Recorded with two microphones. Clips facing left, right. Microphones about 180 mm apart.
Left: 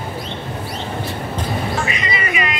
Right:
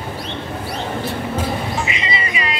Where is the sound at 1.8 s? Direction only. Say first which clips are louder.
Left 1 dB; 25° right (ahead or behind).